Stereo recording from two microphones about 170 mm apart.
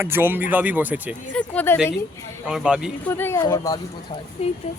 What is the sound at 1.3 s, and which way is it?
Speech, 10° left (ahead or behind).